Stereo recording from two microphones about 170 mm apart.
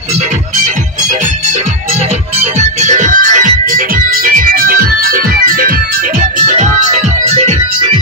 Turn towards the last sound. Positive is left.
turn(degrees=-40)  # may be behind; listen again after turning